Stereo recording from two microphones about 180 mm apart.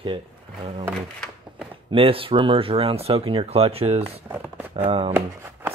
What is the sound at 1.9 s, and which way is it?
Speech, 30° right (ahead or behind).